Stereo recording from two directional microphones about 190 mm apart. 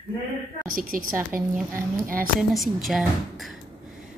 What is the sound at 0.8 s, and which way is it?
Speech, 45° right (ahead or behind).